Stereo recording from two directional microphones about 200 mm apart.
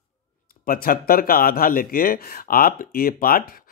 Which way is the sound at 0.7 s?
45° left (ahead or behind).